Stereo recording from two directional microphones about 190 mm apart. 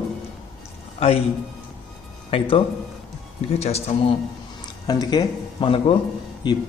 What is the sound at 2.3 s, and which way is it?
Speech, 30° left (ahead or behind).